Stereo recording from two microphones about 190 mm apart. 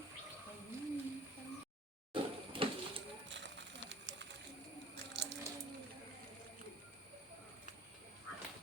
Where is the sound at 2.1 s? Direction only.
30° right (ahead or behind).